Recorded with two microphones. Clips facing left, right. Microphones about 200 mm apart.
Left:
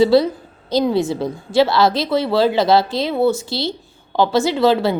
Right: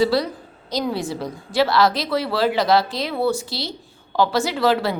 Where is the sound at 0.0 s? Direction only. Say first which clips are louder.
Left 6 dB; 25° left (ahead or behind).